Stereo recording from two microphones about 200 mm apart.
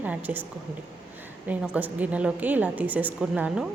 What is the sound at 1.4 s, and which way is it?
A woman's voice, 10° right (ahead or behind).